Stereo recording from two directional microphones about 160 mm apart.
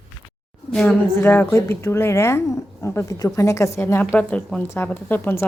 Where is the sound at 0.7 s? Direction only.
10° left (ahead or behind).